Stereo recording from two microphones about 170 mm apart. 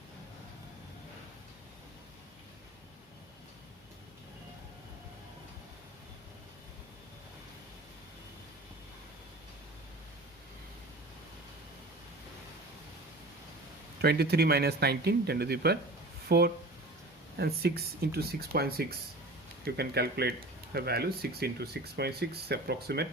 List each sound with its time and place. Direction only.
14.0 s speech: 70° right (ahead or behind)